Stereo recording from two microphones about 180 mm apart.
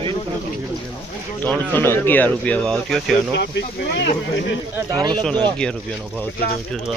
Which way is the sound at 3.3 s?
70° left (ahead or behind).